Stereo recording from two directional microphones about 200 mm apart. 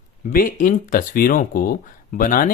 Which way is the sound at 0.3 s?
40° left (ahead or behind).